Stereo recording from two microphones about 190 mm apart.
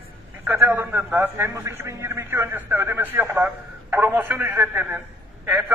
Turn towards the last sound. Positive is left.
turn(degrees=-10)  # may be behind; listen again after turning